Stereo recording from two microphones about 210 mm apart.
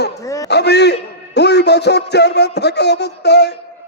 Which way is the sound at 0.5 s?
55° left (ahead or behind).